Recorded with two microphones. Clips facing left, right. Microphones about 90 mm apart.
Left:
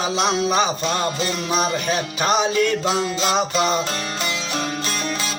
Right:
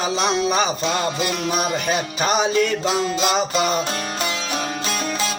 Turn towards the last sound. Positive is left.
turn(degrees=-5)  # may be behind; listen again after turning